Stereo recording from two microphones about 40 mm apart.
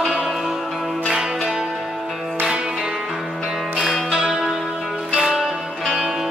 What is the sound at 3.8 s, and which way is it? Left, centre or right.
Music, centre.